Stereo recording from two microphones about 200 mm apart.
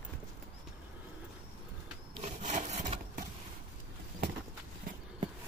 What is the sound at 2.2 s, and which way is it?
Wood, 35° right (ahead or behind).